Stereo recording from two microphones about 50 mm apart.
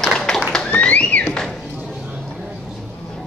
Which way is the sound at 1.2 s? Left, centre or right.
Centre.